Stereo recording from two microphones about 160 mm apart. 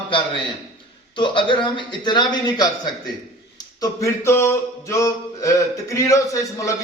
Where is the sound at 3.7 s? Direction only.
20° left (ahead or behind).